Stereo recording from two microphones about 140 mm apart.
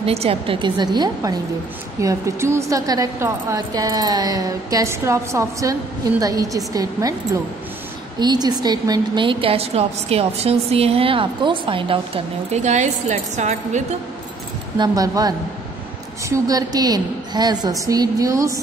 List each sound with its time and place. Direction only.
0.0 s a woman's voice: 45° right (ahead or behind); by 7.2 s 25° right (ahead or behind)
8.2 s a woman's voice: 30° right (ahead or behind)
12.5 s a woman's voice: 60° right (ahead or behind)
14.8 s a woman's voice: 25° right (ahead or behind)